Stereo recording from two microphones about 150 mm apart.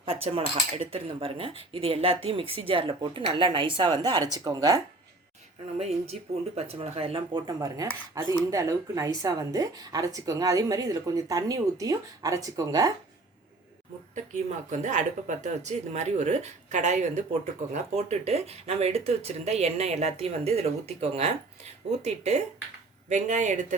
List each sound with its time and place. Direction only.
0.0 s speech: 40° right (ahead or behind); by 4.8 s 25° right (ahead or behind)
5.8 s speech: 45° right (ahead or behind); by 12.9 s 25° right (ahead or behind)
14.3 s speech: 50° right (ahead or behind)